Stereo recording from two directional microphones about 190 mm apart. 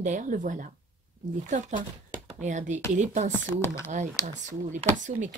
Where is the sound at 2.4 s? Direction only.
40° right (ahead or behind).